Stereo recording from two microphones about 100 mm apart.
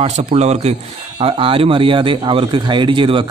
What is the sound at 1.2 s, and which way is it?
A man's voice, 65° right (ahead or behind).